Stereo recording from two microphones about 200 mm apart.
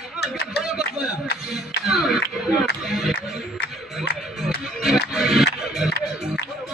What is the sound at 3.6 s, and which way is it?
Music, 55° left (ahead or behind).